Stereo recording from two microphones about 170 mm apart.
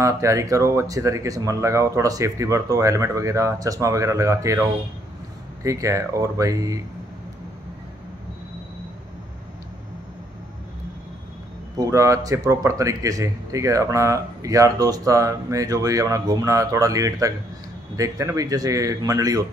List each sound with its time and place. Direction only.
0.0 s a man's voice: 20° right (ahead or behind)
11.7 s a man's voice: 20° right (ahead or behind)